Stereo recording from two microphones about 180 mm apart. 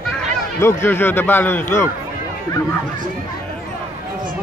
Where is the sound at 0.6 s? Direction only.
10° left (ahead or behind).